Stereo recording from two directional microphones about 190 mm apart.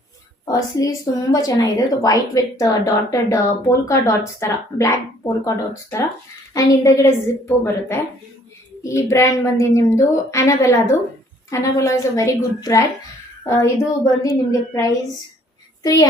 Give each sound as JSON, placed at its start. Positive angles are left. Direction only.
{"t": 0.4, "sound": "a woman's voice", "side_deg": 20}